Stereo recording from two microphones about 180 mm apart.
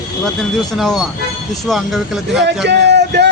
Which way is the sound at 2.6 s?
70° right (ahead or behind).